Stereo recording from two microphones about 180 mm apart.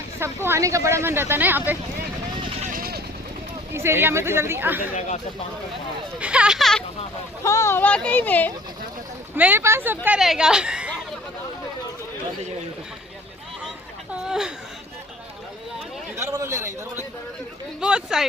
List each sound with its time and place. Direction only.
0.2 s speech: 15° right (ahead or behind)
2.6 s vehicle: 55° right (ahead or behind)
3.7 s speech: 15° right (ahead or behind)
4.9 s speech: 40° left (ahead or behind)
6.1 s speech: 5° right (ahead or behind)
7.4 s a child's voice: 15° left (ahead or behind)
9.3 s speech: 10° right (ahead or behind)
14.3 s a sound: 5° right (ahead or behind)
16.1 s a sound: 15° right (ahead or behind)
17.7 s a sound: 5° right (ahead or behind)